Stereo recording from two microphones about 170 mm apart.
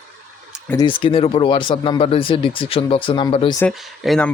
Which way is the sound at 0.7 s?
30° left (ahead or behind).